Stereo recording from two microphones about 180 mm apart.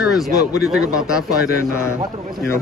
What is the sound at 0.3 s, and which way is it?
Speech, 20° left (ahead or behind).